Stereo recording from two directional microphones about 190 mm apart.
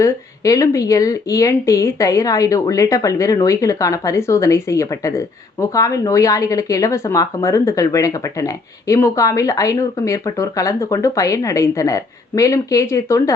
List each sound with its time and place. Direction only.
0.0 s speech: 15° left (ahead or behind)